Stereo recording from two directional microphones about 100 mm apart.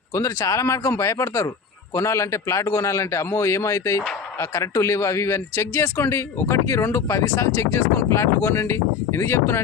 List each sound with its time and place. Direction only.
0.1 s speech: 35° left (ahead or behind)